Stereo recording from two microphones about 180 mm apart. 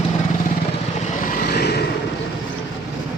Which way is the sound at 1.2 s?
60° left (ahead or behind).